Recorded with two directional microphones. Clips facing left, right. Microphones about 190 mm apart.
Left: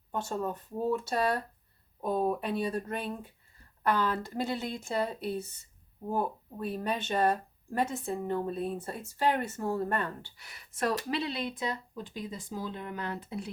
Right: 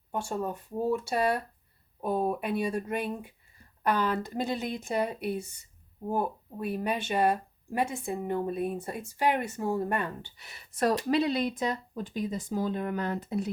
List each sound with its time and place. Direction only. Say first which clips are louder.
0.1 s speech: right 1 dB; 10° right (ahead or behind)
10.8 s speech: right 5 dB; 40° right (ahead or behind)